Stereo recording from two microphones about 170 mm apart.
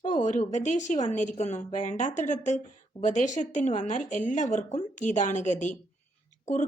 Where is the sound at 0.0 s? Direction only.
45° left (ahead or behind).